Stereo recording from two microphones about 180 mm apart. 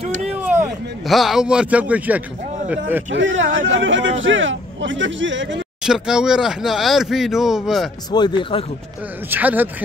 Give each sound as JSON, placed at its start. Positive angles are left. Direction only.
{"t": 0.4, "sound": "speech", "side_deg": -10}
{"t": 3.1, "sound": "speech", "side_deg": -90}
{"t": 5.9, "sound": "speech", "side_deg": -5}
{"t": 8.1, "sound": "speech", "side_deg": 25}
{"t": 9.3, "sound": "speech", "side_deg": -10}